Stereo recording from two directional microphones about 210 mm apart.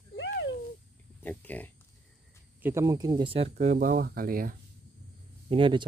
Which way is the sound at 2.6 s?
10° right (ahead or behind).